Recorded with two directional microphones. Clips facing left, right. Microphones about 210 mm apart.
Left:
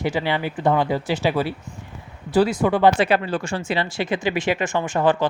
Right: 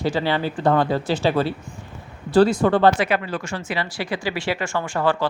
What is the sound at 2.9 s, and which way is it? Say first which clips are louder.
Speech: left 3 dB; 30° left (ahead or behind).